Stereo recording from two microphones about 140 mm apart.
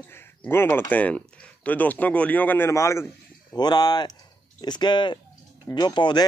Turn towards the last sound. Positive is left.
turn(degrees=30)  # may be behind; listen again after turning